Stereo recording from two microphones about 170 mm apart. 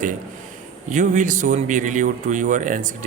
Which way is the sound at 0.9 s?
45° right (ahead or behind).